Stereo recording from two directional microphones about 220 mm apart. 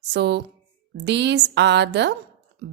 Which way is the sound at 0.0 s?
50° right (ahead or behind).